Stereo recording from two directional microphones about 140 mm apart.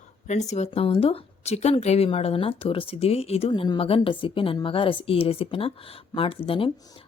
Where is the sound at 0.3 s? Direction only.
55° left (ahead or behind).